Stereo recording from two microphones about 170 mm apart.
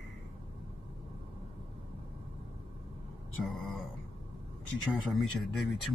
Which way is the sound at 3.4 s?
Centre (ahead or behind).